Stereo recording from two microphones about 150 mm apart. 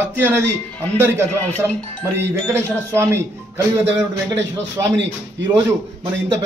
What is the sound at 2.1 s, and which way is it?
A man's voice, 15° right (ahead or behind).